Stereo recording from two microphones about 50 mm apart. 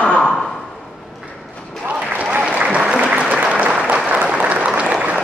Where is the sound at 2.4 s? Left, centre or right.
Right.